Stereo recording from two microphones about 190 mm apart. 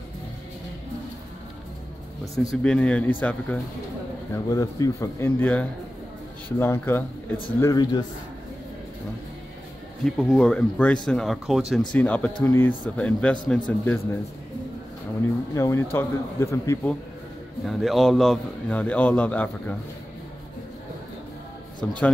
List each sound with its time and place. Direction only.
2.5 s a man's voice: 5° left (ahead or behind)
7.6 s a man's voice: 20° left (ahead or behind)
10.0 s a man's voice: centre (ahead or behind)
15.5 s a man's voice: 15° left (ahead or behind)
17.6 s a man's voice: centre (ahead or behind)
21.8 s a man's voice: 5° left (ahead or behind)